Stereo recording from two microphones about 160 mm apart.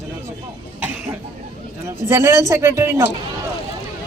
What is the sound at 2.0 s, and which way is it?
A woman's voice, 15° right (ahead or behind).